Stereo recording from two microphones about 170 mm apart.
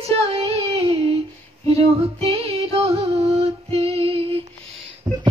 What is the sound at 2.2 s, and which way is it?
Music, 35° right (ahead or behind).